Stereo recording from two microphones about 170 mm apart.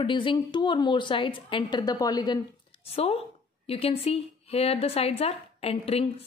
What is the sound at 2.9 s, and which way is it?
Speech, 35° left (ahead or behind).